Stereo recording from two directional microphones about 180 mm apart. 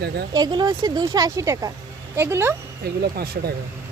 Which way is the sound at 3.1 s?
60° right (ahead or behind).